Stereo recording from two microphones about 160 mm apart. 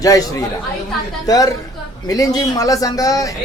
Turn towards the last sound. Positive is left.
turn(degrees=20)  # may be behind; listen again after turning